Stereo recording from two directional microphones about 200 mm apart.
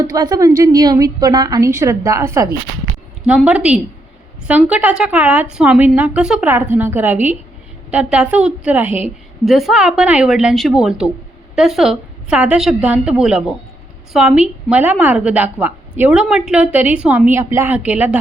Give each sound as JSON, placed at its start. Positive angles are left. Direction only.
{"t": 0.0, "sound": "a woman's voice", "side_deg": -20}